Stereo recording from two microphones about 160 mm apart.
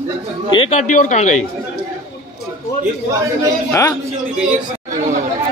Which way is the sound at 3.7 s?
20° left (ahead or behind).